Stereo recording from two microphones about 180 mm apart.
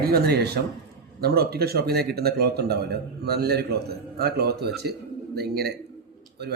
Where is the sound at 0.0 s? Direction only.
60° right (ahead or behind).